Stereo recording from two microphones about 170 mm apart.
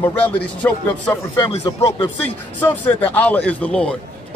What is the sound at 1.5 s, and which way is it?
Speech, 35° left (ahead or behind).